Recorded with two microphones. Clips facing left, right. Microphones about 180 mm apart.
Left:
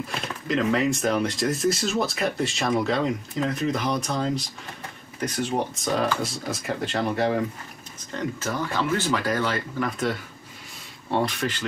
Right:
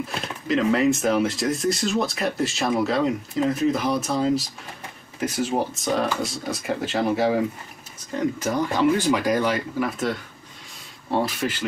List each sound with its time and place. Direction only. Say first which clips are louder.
0.5 s speech: right 3 dB; centre (ahead or behind)
8.4 s speech: right 5 dB; 15° right (ahead or behind)
11.1 s speech: right 1 dB; 5° right (ahead or behind)